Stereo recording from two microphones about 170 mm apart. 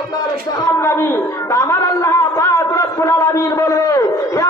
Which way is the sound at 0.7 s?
15° left (ahead or behind).